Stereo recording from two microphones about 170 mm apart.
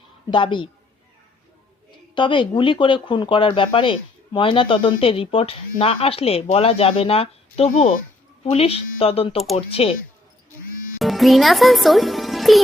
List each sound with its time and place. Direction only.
0.3 s a woman's voice: 30° left (ahead or behind)
2.1 s speech: 30° left (ahead or behind); by 8.0 s 50° left (ahead or behind)
8.4 s speech: 35° left (ahead or behind)
11.0 s a child's voice: centre (ahead or behind)